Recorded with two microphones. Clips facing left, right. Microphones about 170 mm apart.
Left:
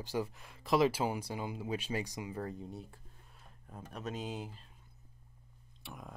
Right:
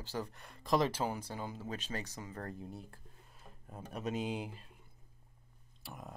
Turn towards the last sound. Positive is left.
turn(degrees=0)  # may be behind; listen again after turning